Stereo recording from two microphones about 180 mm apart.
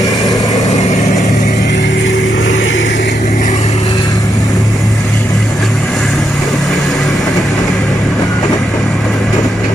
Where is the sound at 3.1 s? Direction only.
45° left (ahead or behind).